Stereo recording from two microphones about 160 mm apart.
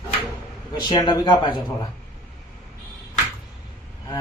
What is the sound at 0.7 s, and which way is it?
A man's voice, 25° left (ahead or behind).